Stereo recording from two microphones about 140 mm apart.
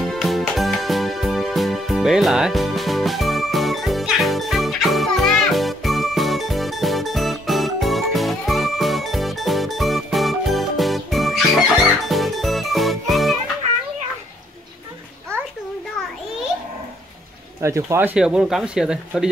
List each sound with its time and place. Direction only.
0.0 s music: centre (ahead or behind)
17.6 s speech: 20° right (ahead or behind)
18.1 s speech: 5° right (ahead or behind)